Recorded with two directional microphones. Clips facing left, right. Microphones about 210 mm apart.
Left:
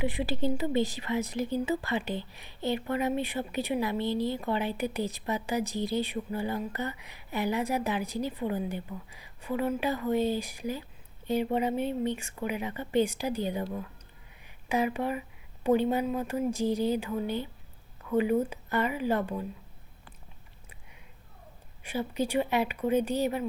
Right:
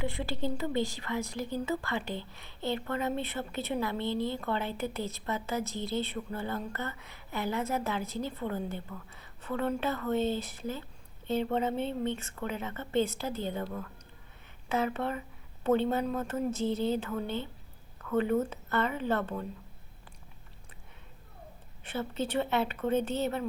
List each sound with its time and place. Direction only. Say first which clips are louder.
0.0 s a woman's voice: left 4 dB; 20° left (ahead or behind)
14.4 s a sound: left 2 dB; 15° left (ahead or behind)
15.9 s a woman's voice: left 2 dB; 10° left (ahead or behind)
21.8 s a woman's voice: left 3 dB; 10° left (ahead or behind)